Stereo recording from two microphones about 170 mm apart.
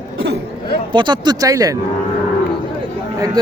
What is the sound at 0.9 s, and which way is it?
Speech, 25° right (ahead or behind).